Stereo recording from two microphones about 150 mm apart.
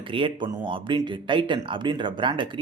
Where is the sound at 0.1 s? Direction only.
35° right (ahead or behind).